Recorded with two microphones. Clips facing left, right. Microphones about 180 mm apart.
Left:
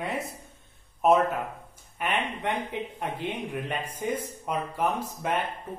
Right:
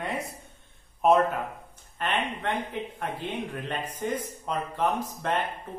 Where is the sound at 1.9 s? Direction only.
15° left (ahead or behind).